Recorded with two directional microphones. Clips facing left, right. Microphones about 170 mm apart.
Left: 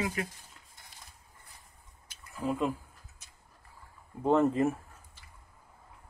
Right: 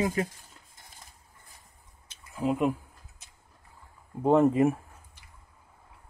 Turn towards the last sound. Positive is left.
turn(degrees=-10)  # may be behind; listen again after turning